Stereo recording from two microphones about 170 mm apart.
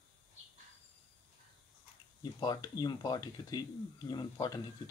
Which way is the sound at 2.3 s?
25° left (ahead or behind).